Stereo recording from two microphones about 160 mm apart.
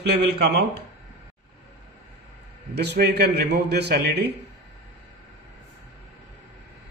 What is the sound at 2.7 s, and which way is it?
A man's voice, 90° right.